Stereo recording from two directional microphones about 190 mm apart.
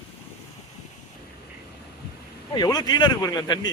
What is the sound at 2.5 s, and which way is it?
Speech, 20° left (ahead or behind).